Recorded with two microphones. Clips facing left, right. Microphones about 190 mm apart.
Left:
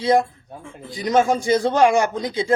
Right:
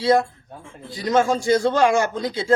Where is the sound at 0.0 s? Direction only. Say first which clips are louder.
Even; 20° left (ahead or behind).